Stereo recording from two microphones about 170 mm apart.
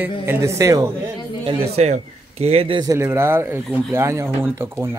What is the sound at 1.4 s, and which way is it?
A man's voice, 35° right (ahead or behind).